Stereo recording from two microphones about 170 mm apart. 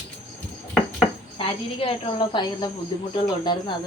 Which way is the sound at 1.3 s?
30° left (ahead or behind).